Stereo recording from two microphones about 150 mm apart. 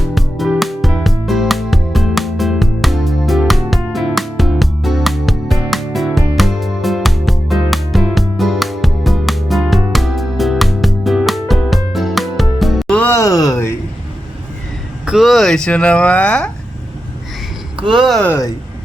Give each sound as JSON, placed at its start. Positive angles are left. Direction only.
{"t": 0.0, "sound": "music", "side_deg": 0}
{"t": 13.0, "sound": "a sound", "side_deg": 15}
{"t": 15.0, "sound": "speech", "side_deg": 0}
{"t": 17.9, "sound": "speech", "side_deg": 0}
{"t": 18.3, "sound": "speech", "side_deg": 20}